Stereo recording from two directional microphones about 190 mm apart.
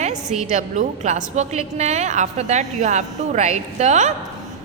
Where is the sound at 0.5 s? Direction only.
40° right (ahead or behind).